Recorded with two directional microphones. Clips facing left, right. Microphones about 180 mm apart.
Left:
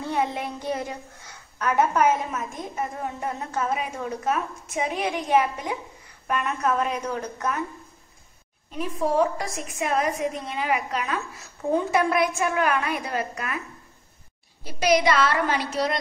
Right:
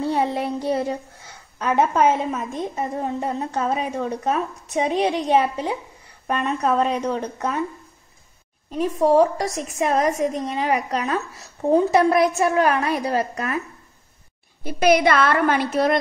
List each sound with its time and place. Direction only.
0.0 s a woman's voice: 35° right (ahead or behind)
8.7 s a woman's voice: 40° right (ahead or behind)
14.6 s a woman's voice: 55° right (ahead or behind)